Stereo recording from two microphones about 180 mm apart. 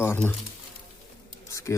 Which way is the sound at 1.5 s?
15° left (ahead or behind).